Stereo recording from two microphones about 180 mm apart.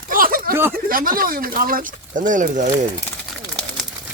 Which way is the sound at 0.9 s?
50° right (ahead or behind).